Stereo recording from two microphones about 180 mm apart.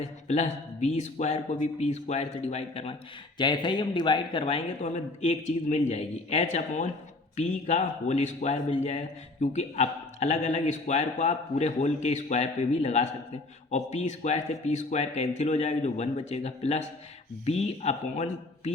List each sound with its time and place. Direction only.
0.0 s speech: 40° left (ahead or behind)